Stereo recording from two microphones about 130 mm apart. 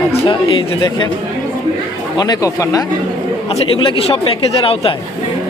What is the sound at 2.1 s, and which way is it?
Speech, 30° left (ahead or behind).